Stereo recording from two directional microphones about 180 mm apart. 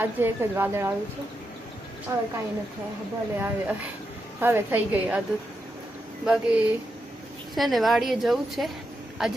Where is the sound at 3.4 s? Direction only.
10° right (ahead or behind).